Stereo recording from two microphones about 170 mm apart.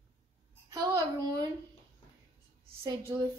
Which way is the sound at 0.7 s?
20° right (ahead or behind).